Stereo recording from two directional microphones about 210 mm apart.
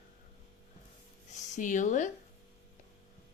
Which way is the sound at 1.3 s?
35° left (ahead or behind).